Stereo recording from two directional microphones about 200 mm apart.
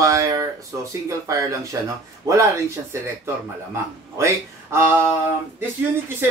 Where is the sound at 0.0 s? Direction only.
15° right (ahead or behind).